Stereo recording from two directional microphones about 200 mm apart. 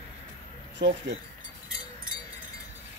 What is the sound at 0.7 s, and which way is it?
Speech, 60° right (ahead or behind).